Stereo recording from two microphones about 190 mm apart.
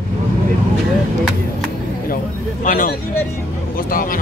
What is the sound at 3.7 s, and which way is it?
Vehicle, 50° left (ahead or behind).